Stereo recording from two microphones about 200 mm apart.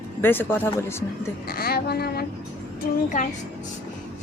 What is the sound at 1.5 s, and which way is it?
Speech, 50° left (ahead or behind).